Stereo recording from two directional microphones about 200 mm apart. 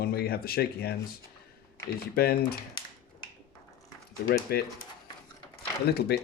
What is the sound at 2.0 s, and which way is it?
Speech, 50° left (ahead or behind).